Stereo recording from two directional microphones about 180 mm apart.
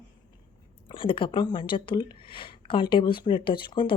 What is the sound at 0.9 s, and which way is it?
A woman's voice, 30° left (ahead or behind).